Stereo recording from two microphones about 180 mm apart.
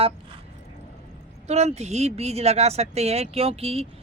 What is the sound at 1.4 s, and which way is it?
Speech, 35° right (ahead or behind).